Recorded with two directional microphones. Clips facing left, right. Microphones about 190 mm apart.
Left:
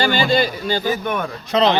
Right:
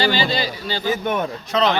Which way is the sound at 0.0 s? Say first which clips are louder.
Left 3 dB; 50° left (ahead or behind).